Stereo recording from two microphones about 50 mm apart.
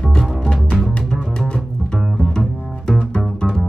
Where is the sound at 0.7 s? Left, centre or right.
Centre.